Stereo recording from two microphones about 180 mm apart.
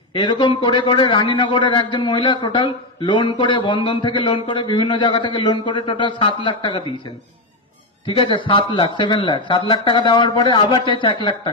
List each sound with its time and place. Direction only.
0.1 s a man's voice: 25° left (ahead or behind)
8.0 s a man's voice: 25° left (ahead or behind)